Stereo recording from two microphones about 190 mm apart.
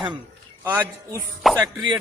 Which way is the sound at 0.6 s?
10° right (ahead or behind).